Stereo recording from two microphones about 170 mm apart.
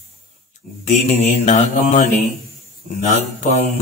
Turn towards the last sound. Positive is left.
turn(degrees=45)  # may be behind; listen again after turning